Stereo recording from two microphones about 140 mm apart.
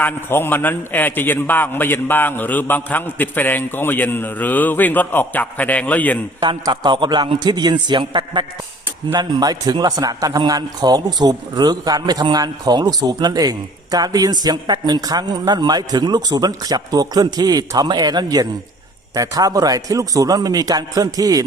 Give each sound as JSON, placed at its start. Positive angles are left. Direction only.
{"t": 0.0, "sound": "a man's voice", "side_deg": 15}
{"t": 6.4, "sound": "a man's voice", "side_deg": -35}